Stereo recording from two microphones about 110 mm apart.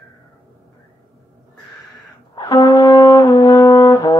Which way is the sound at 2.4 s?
30° left (ahead or behind).